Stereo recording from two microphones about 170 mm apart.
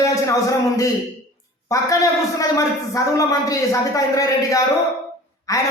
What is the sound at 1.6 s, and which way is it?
A woman's voice, 20° left (ahead or behind).